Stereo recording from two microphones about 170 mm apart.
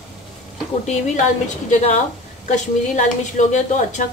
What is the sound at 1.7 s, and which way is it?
A woman's voice, 45° left (ahead or behind).